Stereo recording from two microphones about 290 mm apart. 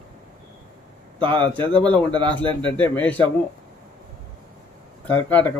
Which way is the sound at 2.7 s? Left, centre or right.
Centre.